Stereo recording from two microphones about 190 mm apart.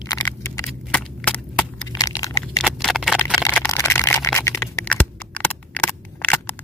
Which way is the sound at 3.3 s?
15° left (ahead or behind).